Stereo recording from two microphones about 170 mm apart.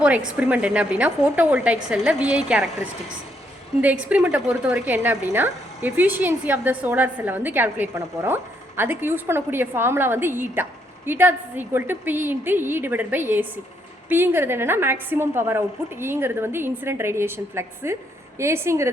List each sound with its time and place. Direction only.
0.3 s a woman's voice: 10° right (ahead or behind)
4.1 s a woman's voice: 5° right (ahead or behind)